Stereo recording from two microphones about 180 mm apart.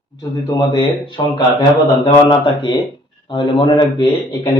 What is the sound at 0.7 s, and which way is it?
Speech, 25° left (ahead or behind).